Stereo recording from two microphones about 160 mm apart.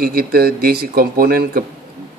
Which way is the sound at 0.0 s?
70° right (ahead or behind).